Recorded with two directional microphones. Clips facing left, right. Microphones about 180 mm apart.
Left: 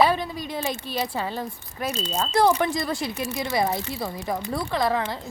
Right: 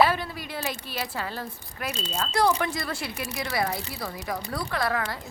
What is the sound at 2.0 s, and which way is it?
Speech, 35° left (ahead or behind).